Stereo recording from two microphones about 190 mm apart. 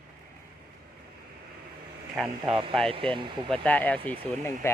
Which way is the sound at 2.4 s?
25° right (ahead or behind).